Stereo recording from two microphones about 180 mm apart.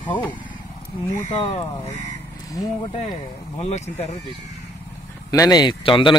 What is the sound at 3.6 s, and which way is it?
Speech, 40° left (ahead or behind).